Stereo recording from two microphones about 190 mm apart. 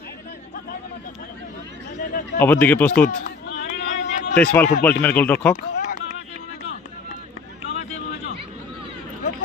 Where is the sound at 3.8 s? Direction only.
65° left (ahead or behind).